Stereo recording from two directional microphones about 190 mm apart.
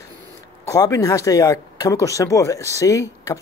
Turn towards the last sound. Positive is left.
turn(degrees=15)  # may be behind; listen again after turning